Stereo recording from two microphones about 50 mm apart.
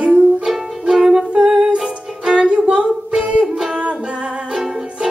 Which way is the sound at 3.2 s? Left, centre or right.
Right.